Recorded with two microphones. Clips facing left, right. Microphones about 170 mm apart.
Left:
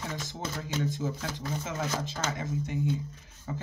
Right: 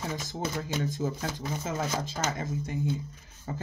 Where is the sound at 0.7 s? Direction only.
15° right (ahead or behind).